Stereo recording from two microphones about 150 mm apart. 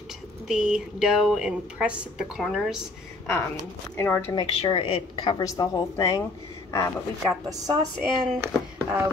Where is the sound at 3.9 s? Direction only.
15° left (ahead or behind).